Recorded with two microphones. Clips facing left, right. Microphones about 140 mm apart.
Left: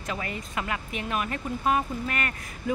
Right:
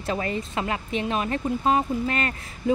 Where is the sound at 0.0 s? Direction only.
30° right (ahead or behind).